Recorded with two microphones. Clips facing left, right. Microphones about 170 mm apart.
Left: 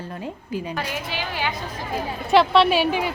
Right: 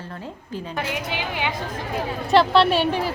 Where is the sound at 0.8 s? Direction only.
20° right (ahead or behind).